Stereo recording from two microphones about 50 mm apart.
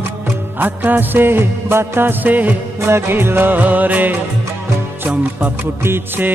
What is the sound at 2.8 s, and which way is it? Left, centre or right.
Mantra, right.